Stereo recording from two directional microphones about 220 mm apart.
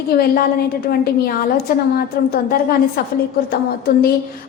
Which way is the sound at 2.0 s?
45° left (ahead or behind).